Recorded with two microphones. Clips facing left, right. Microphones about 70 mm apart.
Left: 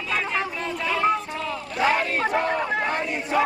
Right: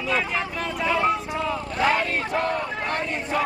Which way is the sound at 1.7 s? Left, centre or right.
Centre.